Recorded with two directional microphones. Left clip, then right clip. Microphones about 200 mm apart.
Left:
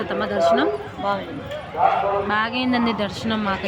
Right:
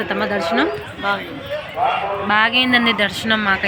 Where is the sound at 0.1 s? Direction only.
20° right (ahead or behind).